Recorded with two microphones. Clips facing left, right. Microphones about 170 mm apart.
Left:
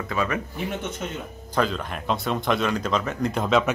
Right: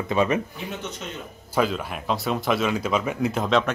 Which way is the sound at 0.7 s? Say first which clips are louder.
Left 3 dB; 50° left (ahead or behind).